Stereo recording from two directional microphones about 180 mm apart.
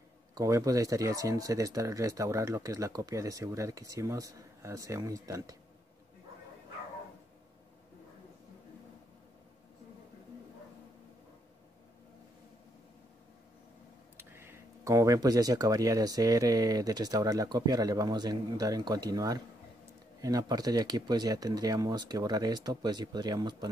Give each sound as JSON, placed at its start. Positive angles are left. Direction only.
{"t": 0.3, "sound": "speech", "side_deg": -20}
{"t": 14.1, "sound": "speech", "side_deg": -15}